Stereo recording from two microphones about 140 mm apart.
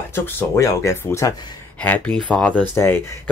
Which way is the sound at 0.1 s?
20° left (ahead or behind).